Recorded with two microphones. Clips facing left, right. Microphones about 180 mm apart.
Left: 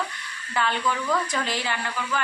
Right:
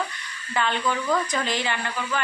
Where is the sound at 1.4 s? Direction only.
5° left (ahead or behind).